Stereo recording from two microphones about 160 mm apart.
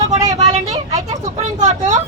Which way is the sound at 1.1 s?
45° right (ahead or behind).